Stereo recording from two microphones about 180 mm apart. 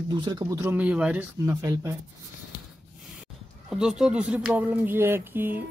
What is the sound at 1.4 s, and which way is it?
Speech, 15° right (ahead or behind).